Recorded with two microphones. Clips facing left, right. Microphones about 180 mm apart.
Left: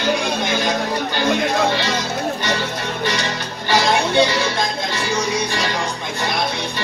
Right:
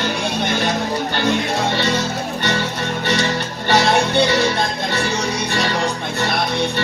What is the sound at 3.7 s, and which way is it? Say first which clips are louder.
Music: right 1 dB; 65° right (ahead or behind).